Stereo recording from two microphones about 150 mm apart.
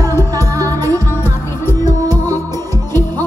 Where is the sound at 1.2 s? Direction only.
15° left (ahead or behind).